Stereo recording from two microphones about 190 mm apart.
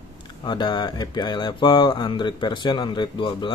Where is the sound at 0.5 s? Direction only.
25° left (ahead or behind).